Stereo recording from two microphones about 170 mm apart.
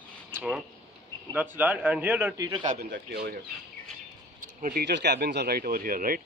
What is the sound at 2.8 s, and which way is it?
Speech, 70° right (ahead or behind).